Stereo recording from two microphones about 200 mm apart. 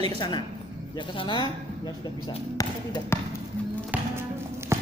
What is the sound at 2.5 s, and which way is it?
Speech, 20° left (ahead or behind).